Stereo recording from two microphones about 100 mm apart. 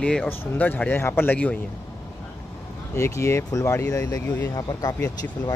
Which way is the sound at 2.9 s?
30° left (ahead or behind).